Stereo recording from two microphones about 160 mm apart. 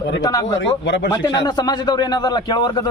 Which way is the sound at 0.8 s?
90° left.